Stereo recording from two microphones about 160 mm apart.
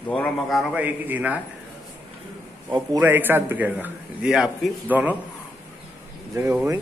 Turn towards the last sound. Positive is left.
turn(degrees=-15)  # may be behind; listen again after turning